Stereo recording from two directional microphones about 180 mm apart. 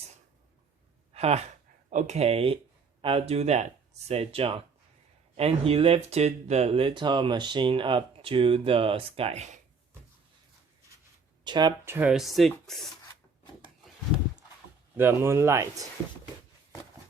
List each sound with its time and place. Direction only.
1.1 s speech: 35° right (ahead or behind)
11.4 s speech: 25° right (ahead or behind)
11.9 s speech: 10° right (ahead or behind)
14.9 s speech: 15° right (ahead or behind)